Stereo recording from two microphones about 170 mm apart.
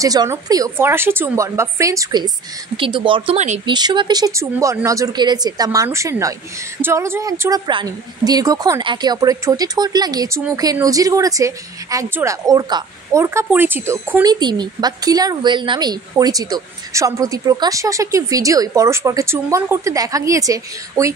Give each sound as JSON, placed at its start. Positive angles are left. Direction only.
{"t": 0.0, "sound": "a woman's voice", "side_deg": -20}
{"t": 3.3, "sound": "speech", "side_deg": -40}
{"t": 3.6, "sound": "a woman's voice", "side_deg": -25}